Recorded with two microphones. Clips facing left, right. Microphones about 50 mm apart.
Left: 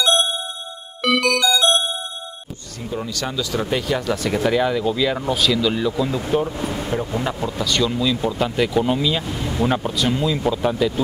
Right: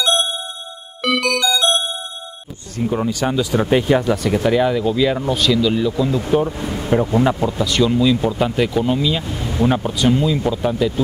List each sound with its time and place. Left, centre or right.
0.0 s music: centre
2.8 s speech: right
4.1 s speech: centre
6.3 s speech: centre
6.9 s speech: right
7.2 s speech: centre